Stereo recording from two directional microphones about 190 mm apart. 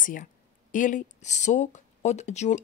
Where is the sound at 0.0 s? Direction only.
45° left (ahead or behind).